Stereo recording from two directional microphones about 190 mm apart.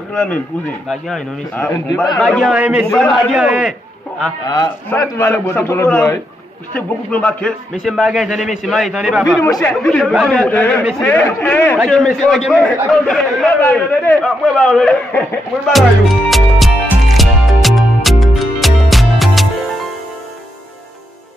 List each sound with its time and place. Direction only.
0.1 s a man's voice: 5° left (ahead or behind)
4.5 s a man's voice: 15° left (ahead or behind)
9.5 s a man's voice: 15° left (ahead or behind)
9.8 s a man's voice: 5° left (ahead or behind)
11.8 s a sound: centre (ahead or behind)